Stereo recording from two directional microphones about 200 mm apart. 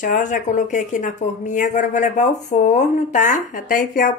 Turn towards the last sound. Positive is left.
turn(degrees=40)  # may be behind; listen again after turning